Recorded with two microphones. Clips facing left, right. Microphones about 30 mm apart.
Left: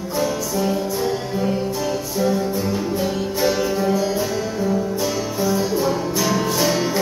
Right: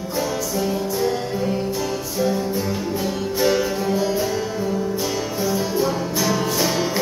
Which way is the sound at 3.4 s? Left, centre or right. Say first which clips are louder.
Even; centre.